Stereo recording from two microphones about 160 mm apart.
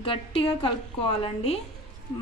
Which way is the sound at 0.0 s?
35° left (ahead or behind).